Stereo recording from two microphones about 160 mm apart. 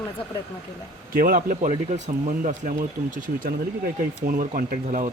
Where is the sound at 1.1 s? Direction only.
60° right (ahead or behind).